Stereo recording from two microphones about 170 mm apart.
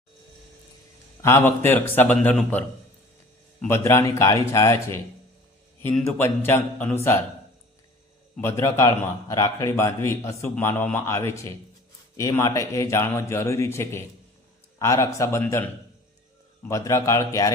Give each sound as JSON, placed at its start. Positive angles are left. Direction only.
{"t": 1.2, "sound": "a man's voice", "side_deg": 15}
{"t": 3.7, "sound": "a man's voice", "side_deg": 15}
{"t": 8.4, "sound": "a man's voice", "side_deg": 15}